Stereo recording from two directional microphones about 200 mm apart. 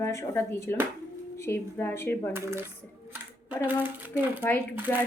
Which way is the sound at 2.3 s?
10° right (ahead or behind).